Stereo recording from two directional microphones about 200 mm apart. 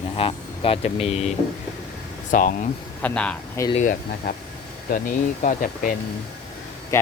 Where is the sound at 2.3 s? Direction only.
45° left (ahead or behind).